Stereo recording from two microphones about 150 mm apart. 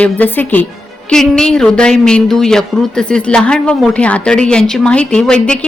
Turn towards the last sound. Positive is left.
turn(degrees=5)  # may be behind; listen again after turning